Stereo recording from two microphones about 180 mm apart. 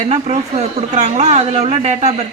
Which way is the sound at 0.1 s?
35° right (ahead or behind).